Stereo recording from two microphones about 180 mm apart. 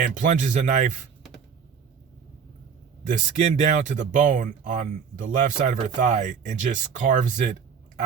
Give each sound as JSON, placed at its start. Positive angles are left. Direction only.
{"t": 0.0, "sound": "speech", "side_deg": -45}
{"t": 3.1, "sound": "speech", "side_deg": -40}